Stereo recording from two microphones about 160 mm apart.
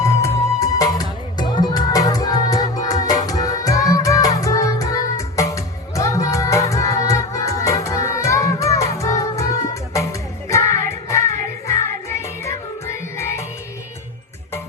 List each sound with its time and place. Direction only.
0.6 s music: 20° left (ahead or behind)